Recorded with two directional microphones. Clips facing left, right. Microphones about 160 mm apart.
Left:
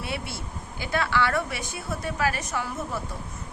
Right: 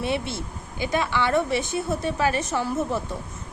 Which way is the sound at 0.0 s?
25° right (ahead or behind).